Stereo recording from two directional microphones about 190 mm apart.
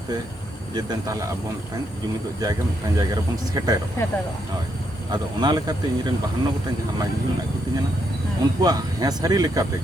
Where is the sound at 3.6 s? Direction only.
20° right (ahead or behind).